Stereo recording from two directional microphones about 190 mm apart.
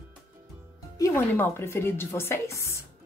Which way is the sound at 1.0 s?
10° left (ahead or behind).